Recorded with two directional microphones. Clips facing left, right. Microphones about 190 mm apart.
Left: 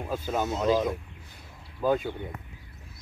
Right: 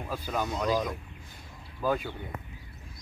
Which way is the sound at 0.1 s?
25° left (ahead or behind).